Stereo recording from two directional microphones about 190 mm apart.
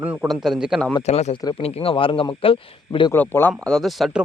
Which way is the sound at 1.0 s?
35° left (ahead or behind).